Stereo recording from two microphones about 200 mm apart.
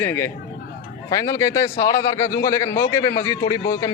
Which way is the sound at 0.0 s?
10° left (ahead or behind).